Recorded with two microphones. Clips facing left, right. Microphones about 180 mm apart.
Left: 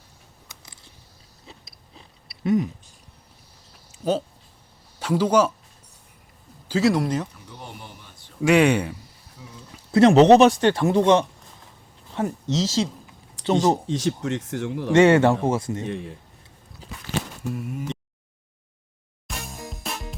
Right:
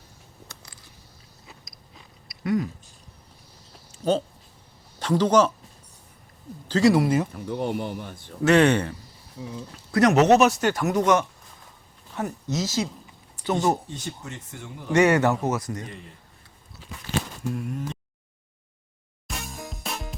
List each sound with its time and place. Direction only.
1.5 s biting: 30° left (ahead or behind)
3.9 s a sound: 5° left (ahead or behind)
4.9 s speech: 10° left (ahead or behind)
6.7 s speech: 5° left (ahead or behind)
6.9 s speech: 5° right (ahead or behind)
7.3 s speech: 55° right (ahead or behind)
8.4 s speech: 10° left (ahead or behind)
9.9 s speech: 25° left (ahead or behind)
13.4 s a sound: 90° left
13.8 s speech: 90° left
14.9 s speech: 25° left (ahead or behind)
15.9 s speech: 90° left
17.4 s speech: 5° left (ahead or behind)
19.3 s music: centre (ahead or behind)